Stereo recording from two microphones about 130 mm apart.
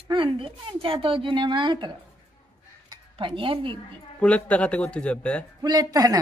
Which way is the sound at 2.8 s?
40° right (ahead or behind).